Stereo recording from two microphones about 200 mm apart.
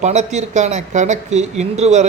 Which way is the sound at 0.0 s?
35° right (ahead or behind).